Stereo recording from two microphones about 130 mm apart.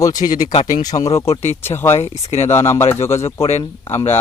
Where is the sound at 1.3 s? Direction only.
60° left (ahead or behind).